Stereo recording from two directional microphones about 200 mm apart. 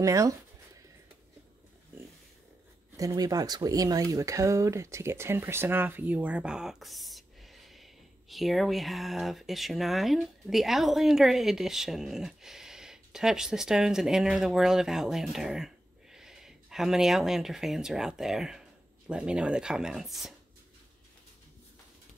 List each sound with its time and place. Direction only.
0.0 s speech: 15° right (ahead or behind)
3.0 s speech: 20° right (ahead or behind); by 20.3 s centre (ahead or behind)